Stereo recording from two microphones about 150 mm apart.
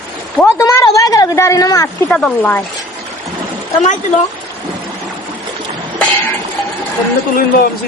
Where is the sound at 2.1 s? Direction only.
5° left (ahead or behind).